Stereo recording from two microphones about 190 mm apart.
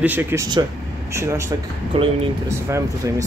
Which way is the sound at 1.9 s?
30° right (ahead or behind).